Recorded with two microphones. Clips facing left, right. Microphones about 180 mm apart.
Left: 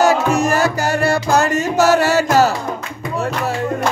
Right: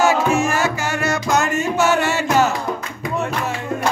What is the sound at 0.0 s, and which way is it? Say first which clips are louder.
Music: left 2 dB; 40° left (ahead or behind).